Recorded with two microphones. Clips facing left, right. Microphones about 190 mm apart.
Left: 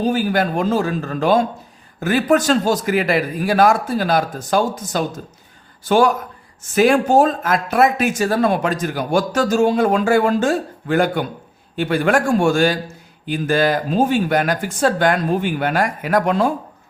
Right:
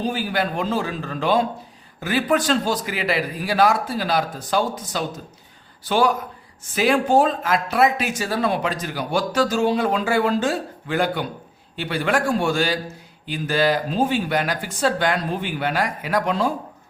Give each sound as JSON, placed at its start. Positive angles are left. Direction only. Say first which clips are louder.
{"t": 0.0, "sound": "speech", "louder": "left 6 dB", "side_deg": 45}